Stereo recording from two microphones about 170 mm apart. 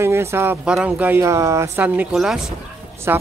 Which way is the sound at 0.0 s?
15° right (ahead or behind).